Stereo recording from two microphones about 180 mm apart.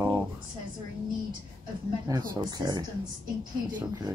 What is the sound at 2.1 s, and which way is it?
Speech, 20° right (ahead or behind).